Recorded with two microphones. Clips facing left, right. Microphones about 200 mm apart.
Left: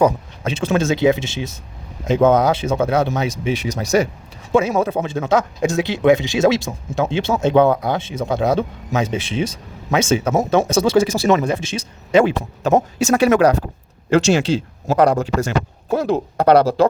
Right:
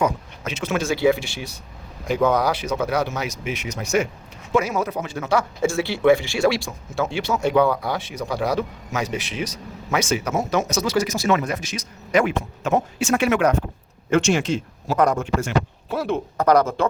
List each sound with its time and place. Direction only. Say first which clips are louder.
0.0 s speech: left 6 dB; 30° left (ahead or behind)